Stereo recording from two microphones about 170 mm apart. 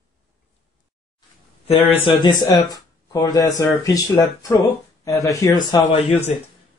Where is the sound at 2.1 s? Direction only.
25° left (ahead or behind).